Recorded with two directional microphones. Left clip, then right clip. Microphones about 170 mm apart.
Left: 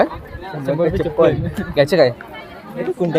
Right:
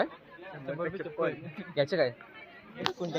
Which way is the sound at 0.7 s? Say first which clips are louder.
Left 17 dB; 55° left (ahead or behind).